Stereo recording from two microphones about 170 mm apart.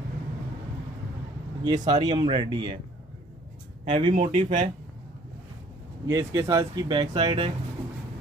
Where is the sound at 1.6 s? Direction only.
25° right (ahead or behind).